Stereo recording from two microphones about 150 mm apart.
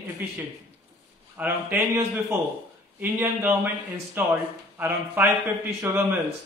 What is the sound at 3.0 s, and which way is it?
A man's voice, 10° right (ahead or behind).